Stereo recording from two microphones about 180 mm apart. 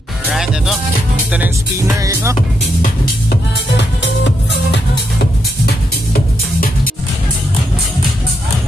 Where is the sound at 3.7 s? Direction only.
75° left (ahead or behind).